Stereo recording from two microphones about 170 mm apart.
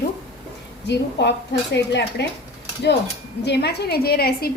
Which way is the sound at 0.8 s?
90° left.